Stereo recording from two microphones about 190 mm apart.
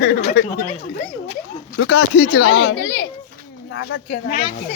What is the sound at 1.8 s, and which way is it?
Speech, 65° left (ahead or behind).